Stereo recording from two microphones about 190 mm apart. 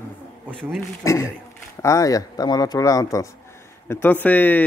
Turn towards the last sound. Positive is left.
turn(degrees=10)  # may be behind; listen again after turning